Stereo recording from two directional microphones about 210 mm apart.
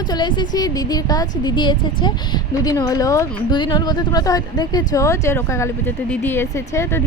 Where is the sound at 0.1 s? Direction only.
20° left (ahead or behind).